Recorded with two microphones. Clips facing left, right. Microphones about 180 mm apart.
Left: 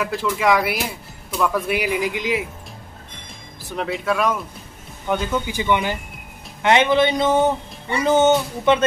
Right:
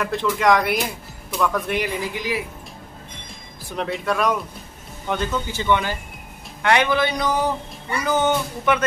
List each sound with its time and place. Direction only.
0.0 s speech: 5° left (ahead or behind); by 2.4 s 20° left (ahead or behind)
3.6 s speech: centre (ahead or behind); by 8.8 s 25° left (ahead or behind)